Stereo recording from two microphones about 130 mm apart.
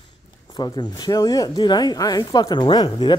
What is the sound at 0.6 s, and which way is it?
Speech, 35° left (ahead or behind).